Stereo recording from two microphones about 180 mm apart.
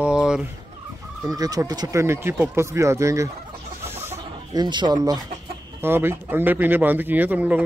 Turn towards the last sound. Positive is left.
turn(degrees=-10)  # may be behind; listen again after turning